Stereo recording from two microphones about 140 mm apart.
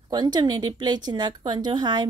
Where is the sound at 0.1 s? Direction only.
30° right (ahead or behind).